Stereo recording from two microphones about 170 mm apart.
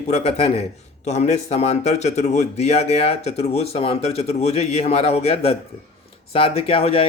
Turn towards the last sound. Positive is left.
turn(degrees=35)  # may be behind; listen again after turning